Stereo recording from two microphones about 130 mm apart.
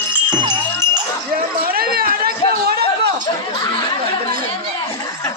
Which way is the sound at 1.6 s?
90° right.